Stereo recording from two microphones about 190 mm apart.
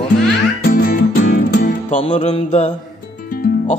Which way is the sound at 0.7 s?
50° left (ahead or behind).